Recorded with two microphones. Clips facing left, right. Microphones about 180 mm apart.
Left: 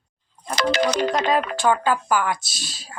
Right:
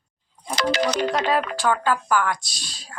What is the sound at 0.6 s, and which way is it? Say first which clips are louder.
Speech: left 1 dB; 50° left (ahead or behind).